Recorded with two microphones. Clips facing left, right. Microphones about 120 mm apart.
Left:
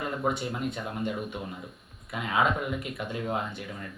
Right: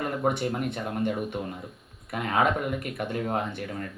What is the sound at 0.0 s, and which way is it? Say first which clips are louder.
Speech: right 3 dB; 55° right (ahead or behind).